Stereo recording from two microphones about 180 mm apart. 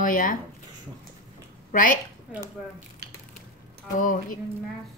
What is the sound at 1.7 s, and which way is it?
Speech, 50° left (ahead or behind).